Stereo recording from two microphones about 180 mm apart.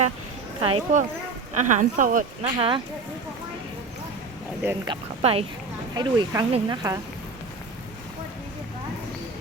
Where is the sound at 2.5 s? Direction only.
25° right (ahead or behind).